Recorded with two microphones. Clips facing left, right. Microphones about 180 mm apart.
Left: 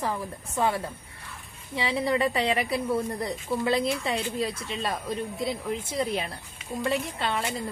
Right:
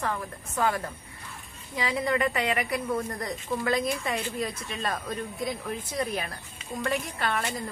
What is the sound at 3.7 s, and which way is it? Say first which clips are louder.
A woman's voice: left 1 dB; 30° left (ahead or behind).